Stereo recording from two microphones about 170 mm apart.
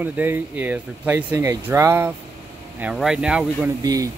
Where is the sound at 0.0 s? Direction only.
10° right (ahead or behind).